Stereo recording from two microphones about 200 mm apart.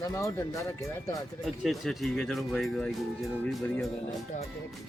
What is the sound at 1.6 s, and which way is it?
Speech, centre (ahead or behind).